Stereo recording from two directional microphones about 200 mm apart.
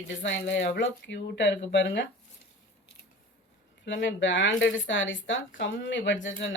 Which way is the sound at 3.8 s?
65° left (ahead or behind).